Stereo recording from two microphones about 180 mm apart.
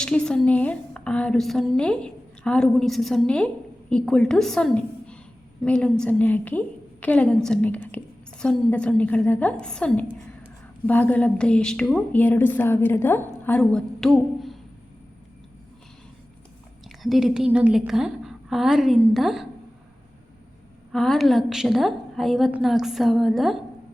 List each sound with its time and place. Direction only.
0.0 s a woman's voice: 5° left (ahead or behind)
16.8 s a woman's voice: centre (ahead or behind)
20.9 s a woman's voice: centre (ahead or behind)